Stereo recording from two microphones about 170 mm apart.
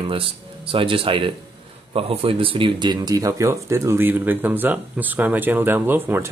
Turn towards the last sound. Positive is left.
turn(degrees=-10)  # may be behind; listen again after turning